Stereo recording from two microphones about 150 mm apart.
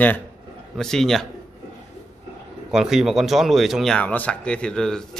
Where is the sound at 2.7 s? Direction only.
5° right (ahead or behind).